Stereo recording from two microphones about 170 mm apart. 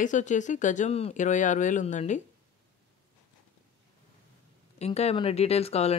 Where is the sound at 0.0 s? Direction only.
45° left (ahead or behind).